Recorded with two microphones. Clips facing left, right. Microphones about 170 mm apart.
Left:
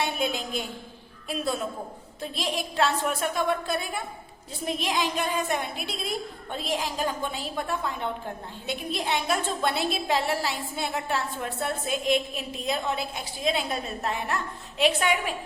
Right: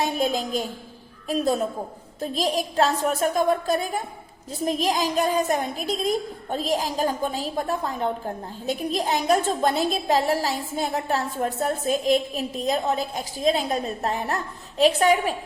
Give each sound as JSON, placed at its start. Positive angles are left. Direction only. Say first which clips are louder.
{"t": 0.0, "sound": "a woman's voice", "louder": "right 4 dB", "side_deg": -40}